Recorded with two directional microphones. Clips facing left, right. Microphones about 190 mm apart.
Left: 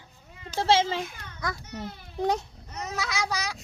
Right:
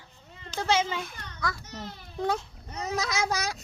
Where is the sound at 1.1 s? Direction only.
10° left (ahead or behind).